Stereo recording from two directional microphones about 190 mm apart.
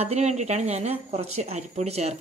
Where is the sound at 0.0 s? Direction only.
35° right (ahead or behind).